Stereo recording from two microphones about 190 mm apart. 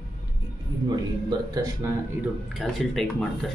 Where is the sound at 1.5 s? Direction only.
20° right (ahead or behind).